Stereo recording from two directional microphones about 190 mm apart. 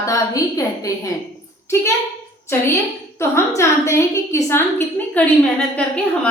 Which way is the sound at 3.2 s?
15° left (ahead or behind).